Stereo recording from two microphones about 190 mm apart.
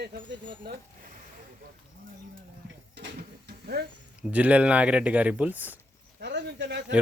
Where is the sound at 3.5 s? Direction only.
55° right (ahead or behind).